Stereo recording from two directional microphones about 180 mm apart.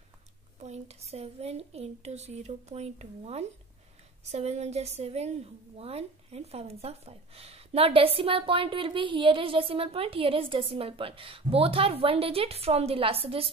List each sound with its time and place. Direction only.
0.6 s a woman's voice: 35° right (ahead or behind)